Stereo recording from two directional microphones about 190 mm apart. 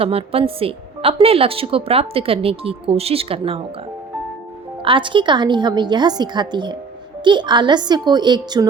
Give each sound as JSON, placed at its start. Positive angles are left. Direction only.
{"t": 0.0, "sound": "a woman's voice", "side_deg": -30}
{"t": 4.8, "sound": "a woman's voice", "side_deg": -25}